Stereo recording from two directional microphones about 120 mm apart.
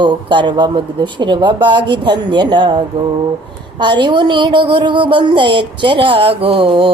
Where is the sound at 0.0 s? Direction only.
40° right (ahead or behind).